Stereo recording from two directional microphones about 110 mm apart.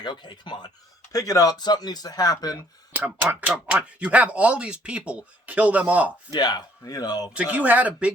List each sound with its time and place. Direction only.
0.0 s speech: 45° left (ahead or behind)
1.1 s speech: 30° left (ahead or behind)
3.2 s speech: 10° right (ahead or behind)
6.3 s speech: 35° left (ahead or behind)
7.3 s speech: 15° right (ahead or behind)